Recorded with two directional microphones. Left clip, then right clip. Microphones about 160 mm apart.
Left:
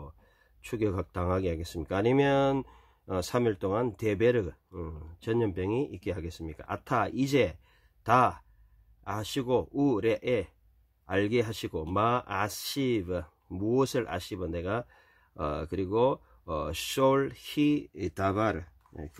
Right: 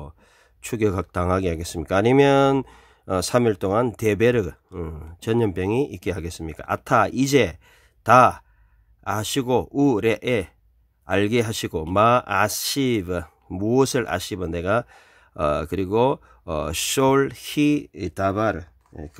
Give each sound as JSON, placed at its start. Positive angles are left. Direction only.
{"t": 0.6, "sound": "speech", "side_deg": -45}
{"t": 18.0, "sound": "speech", "side_deg": -20}